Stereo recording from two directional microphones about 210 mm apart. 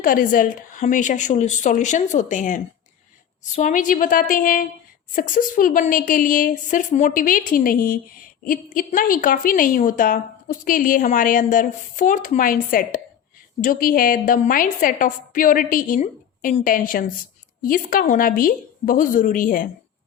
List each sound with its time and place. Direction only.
0.0 s a woman's voice: 40° left (ahead or behind)